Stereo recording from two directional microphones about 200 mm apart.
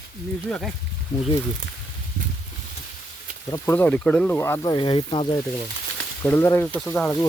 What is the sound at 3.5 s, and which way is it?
Speech, 10° left (ahead or behind).